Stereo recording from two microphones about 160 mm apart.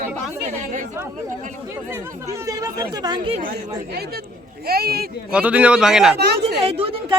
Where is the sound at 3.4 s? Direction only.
75° right (ahead or behind).